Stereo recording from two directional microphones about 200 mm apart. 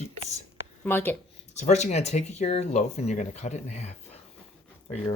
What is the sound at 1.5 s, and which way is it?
Speech, 35° left (ahead or behind).